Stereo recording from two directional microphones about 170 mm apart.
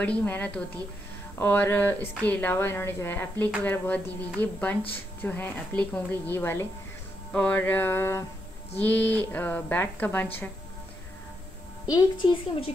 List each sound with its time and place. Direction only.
0.0 s a woman's voice: 10° left (ahead or behind)
11.9 s a woman's voice: 30° left (ahead or behind)